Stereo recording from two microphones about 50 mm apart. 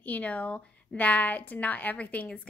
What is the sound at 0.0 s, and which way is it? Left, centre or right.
A woman's voice, left.